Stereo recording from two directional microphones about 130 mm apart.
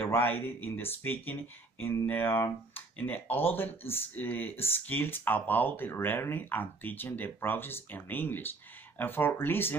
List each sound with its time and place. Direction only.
0.0 s speech: 15° left (ahead or behind)